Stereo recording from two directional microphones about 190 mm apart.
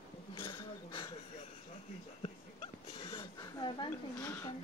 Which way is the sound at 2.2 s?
30° left (ahead or behind).